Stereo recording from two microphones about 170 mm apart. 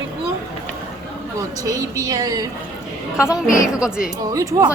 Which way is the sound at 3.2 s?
5° right (ahead or behind).